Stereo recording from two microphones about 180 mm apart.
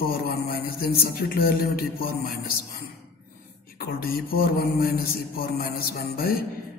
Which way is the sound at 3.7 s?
55° left (ahead or behind).